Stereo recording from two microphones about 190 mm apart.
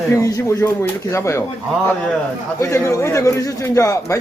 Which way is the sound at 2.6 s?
15° left (ahead or behind).